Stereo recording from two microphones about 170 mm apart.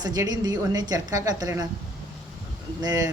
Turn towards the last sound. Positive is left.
turn(degrees=-20)  # may be behind; listen again after turning